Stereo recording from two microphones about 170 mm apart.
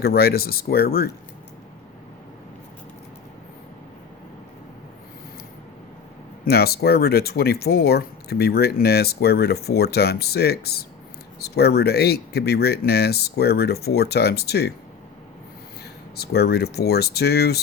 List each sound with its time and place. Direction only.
0.0 s speech: 65° left (ahead or behind)
6.4 s speech: 70° left (ahead or behind)
16.1 s speech: 70° left (ahead or behind)